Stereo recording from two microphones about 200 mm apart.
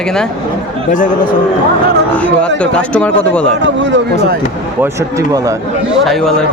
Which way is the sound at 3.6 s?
65° right (ahead or behind).